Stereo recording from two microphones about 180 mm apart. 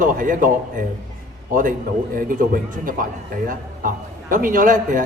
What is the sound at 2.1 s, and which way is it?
A man's voice, 50° right (ahead or behind).